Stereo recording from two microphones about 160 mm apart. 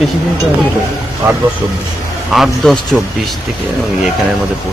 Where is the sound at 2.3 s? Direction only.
Centre (ahead or behind).